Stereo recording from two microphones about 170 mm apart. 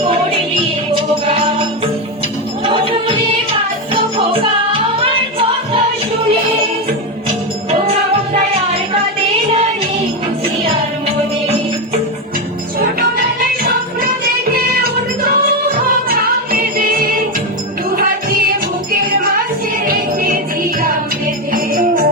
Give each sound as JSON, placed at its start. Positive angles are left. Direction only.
{"t": 0.0, "sound": "music", "side_deg": -30}
{"t": 5.0, "sound": "music", "side_deg": -30}
{"t": 15.2, "sound": "music", "side_deg": -60}
{"t": 19.8, "sound": "music", "side_deg": -55}
{"t": 21.5, "sound": "music", "side_deg": -55}